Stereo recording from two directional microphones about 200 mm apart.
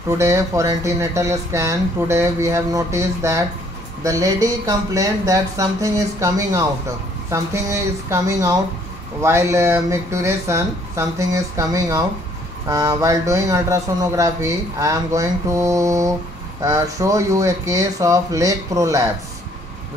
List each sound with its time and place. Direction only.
0.2 s speech: 15° right (ahead or behind)